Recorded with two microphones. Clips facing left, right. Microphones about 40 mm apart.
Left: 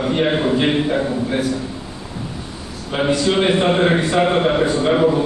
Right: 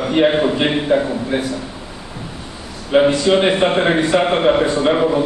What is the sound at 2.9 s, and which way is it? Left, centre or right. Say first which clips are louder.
A man's voice: right 4 dB; right.